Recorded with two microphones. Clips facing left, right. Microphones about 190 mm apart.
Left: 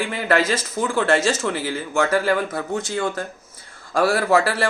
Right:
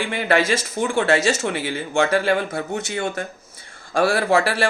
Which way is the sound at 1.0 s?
70° right (ahead or behind).